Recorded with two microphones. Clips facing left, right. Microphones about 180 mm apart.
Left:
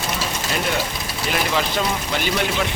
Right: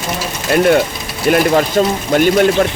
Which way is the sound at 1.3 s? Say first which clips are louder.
Right 11 dB; 50° right (ahead or behind).